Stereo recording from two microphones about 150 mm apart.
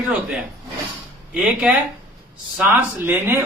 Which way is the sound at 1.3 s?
5° right (ahead or behind).